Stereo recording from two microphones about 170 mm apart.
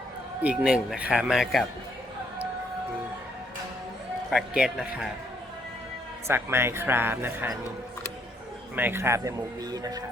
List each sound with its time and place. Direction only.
0.4 s speech: 5° right (ahead or behind)
4.3 s speech: 5° right (ahead or behind)
6.2 s speech: 15° right (ahead or behind)
8.7 s speech: 10° right (ahead or behind)